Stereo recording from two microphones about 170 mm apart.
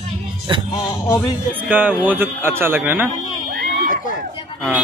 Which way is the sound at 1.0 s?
10° left (ahead or behind).